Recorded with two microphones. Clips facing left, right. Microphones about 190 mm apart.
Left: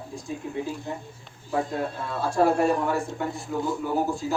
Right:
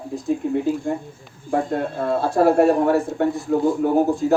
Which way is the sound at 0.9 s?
50° right (ahead or behind).